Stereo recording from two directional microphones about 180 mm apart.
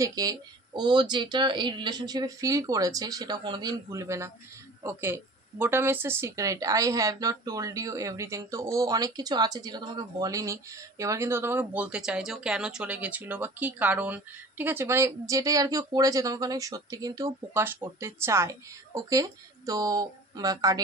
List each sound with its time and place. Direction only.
0.0 s speech: 20° right (ahead or behind)